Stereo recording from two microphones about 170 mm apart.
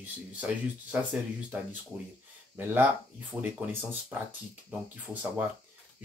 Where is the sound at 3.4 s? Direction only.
10° right (ahead or behind).